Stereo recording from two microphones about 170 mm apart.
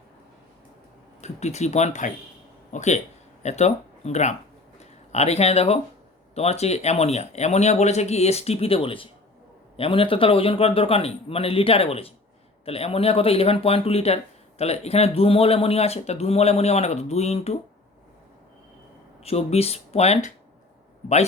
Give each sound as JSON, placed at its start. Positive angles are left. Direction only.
{"t": 1.2, "sound": "speech", "side_deg": 40}
{"t": 19.2, "sound": "speech", "side_deg": 35}